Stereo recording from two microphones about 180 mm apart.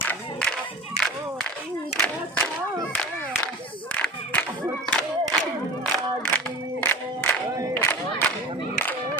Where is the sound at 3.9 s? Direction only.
5° left (ahead or behind).